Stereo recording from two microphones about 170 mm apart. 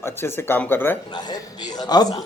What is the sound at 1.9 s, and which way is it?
Speech, 25° left (ahead or behind).